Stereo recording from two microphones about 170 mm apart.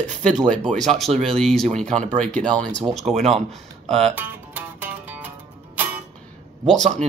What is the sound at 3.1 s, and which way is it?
Speech, 40° right (ahead or behind).